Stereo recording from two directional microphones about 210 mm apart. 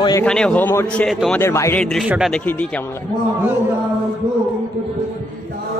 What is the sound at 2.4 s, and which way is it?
Speech, 5° left (ahead or behind).